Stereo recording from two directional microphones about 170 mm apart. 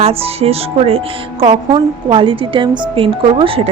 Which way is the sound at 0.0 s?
35° right (ahead or behind).